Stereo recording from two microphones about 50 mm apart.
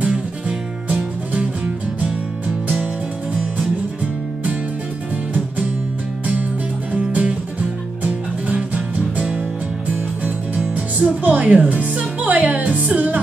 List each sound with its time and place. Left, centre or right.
0.0 s music: centre
3.5 s music: right
6.9 s music: right
10.6 s music: centre
11.2 s music: right